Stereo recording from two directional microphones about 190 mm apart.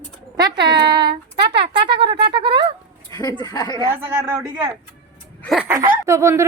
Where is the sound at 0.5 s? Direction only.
60° right (ahead or behind).